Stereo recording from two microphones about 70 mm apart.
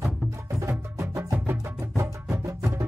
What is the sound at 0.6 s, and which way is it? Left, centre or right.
Music, right.